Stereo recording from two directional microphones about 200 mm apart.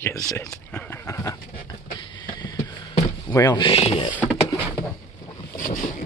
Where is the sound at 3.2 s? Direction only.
20° left (ahead or behind).